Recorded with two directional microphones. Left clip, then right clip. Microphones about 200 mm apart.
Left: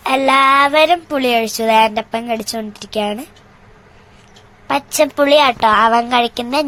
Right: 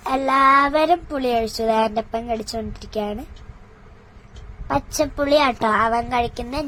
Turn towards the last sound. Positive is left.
turn(degrees=20)  # may be behind; listen again after turning